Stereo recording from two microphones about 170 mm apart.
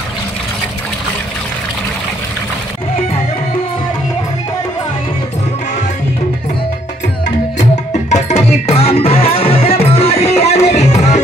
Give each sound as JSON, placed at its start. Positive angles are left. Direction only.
{"t": 8.1, "sound": "music", "side_deg": 40}